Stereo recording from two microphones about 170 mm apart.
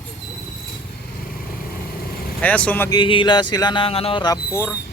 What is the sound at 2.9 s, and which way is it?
Speech, 30° left (ahead or behind).